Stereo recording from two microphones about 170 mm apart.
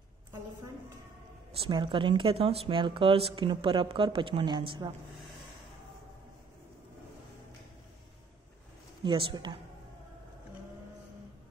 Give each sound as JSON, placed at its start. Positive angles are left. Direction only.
{"t": 1.7, "sound": "a woman's voice", "side_deg": -30}
{"t": 9.0, "sound": "a woman's voice", "side_deg": -30}